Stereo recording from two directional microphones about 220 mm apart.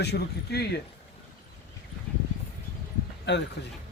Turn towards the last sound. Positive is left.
turn(degrees=50)  # may be behind; listen again after turning